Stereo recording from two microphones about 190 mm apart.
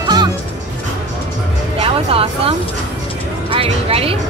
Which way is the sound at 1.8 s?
30° right (ahead or behind).